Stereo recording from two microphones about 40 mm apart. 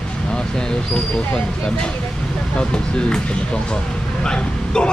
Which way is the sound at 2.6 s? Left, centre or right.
Left.